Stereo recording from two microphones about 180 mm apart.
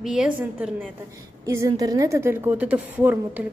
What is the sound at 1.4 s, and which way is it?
A woman's voice, 20° right (ahead or behind).